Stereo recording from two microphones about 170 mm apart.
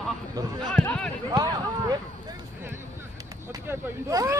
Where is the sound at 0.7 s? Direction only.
5° left (ahead or behind).